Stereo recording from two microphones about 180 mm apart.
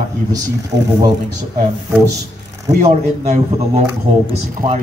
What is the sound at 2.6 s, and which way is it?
A man's voice, 40° right (ahead or behind).